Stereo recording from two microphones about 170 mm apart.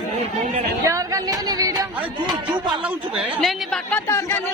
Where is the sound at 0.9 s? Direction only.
20° right (ahead or behind).